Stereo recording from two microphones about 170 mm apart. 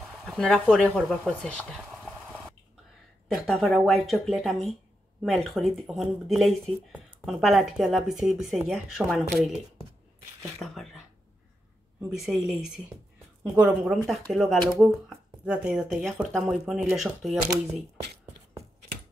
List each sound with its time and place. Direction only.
0.2 s speech: centre (ahead or behind)
0.9 s a sound: 5° left (ahead or behind)
3.3 s speech: centre (ahead or behind)
10.6 s speech: centre (ahead or behind)
12.1 s speech: centre (ahead or behind)